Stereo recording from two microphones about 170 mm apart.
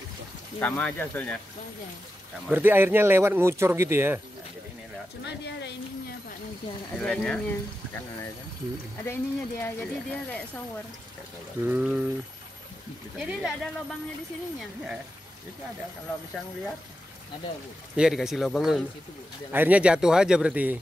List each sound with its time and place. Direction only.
0.6 s speech: 10° left (ahead or behind)
2.5 s speech: 10° right (ahead or behind)
5.2 s speech: 90° left
7.0 s speech: 5° left (ahead or behind)
9.0 s speech: 15° left (ahead or behind)
11.6 s speech: 10° right (ahead or behind)
13.2 s speech: centre (ahead or behind)
17.9 s speech: 5° right (ahead or behind)